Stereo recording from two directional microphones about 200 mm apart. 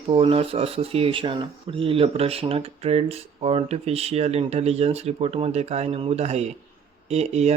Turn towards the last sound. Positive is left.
turn(degrees=-30)  # may be behind; listen again after turning